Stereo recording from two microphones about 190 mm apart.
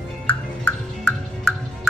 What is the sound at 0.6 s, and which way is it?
Music, 5° left (ahead or behind).